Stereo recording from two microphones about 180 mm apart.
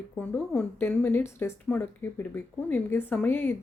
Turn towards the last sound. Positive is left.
turn(degrees=10)  # may be behind; listen again after turning